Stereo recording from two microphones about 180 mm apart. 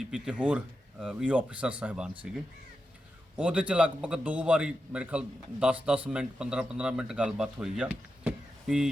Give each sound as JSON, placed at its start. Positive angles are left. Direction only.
{"t": 0.0, "sound": "a man's voice", "side_deg": -5}